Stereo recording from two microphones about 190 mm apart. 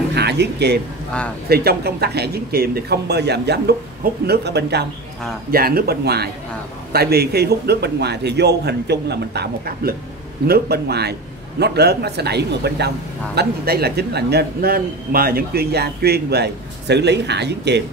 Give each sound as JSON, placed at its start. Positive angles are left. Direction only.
{"t": 0.1, "sound": "speech", "side_deg": -60}